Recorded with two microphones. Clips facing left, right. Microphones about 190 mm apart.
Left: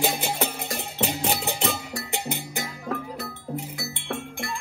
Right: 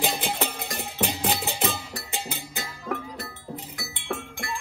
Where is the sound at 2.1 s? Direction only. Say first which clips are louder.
Left 4 dB; 15° left (ahead or behind).